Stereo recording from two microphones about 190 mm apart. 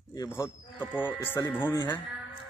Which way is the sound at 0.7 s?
5° right (ahead or behind).